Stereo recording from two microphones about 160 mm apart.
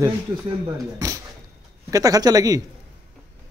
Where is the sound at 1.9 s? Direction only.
20° right (ahead or behind).